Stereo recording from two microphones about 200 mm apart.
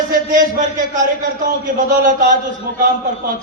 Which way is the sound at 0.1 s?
40° right (ahead or behind).